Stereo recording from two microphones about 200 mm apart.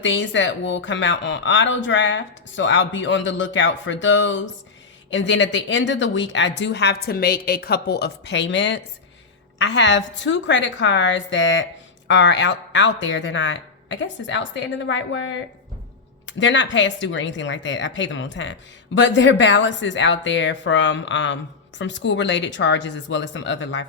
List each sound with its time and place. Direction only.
0.0 s speech: 70° left (ahead or behind)